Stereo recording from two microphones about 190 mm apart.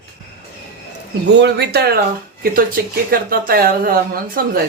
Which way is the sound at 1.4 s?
60° right (ahead or behind).